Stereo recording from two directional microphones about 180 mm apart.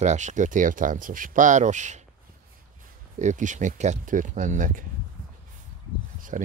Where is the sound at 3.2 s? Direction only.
45° right (ahead or behind).